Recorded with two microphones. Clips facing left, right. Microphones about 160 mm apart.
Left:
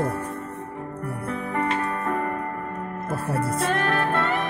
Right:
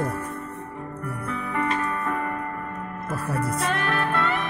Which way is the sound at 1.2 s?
45° left (ahead or behind).